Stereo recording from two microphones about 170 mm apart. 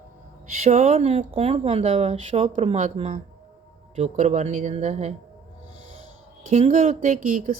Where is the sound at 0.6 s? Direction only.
40° right (ahead or behind).